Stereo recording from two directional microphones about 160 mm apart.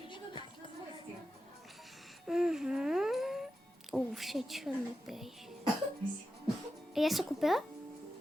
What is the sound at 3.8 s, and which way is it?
A woman's voice, centre (ahead or behind).